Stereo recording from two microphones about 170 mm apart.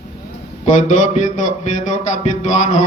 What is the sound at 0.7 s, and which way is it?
A man's voice, 45° left (ahead or behind).